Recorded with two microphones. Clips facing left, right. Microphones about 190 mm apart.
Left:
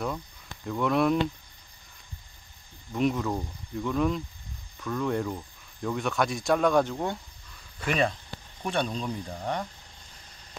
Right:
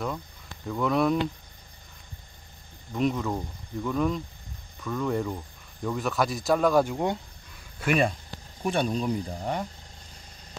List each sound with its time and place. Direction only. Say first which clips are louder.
0.7 s speech: even; centre (ahead or behind)
2.9 s speech: even; centre (ahead or behind)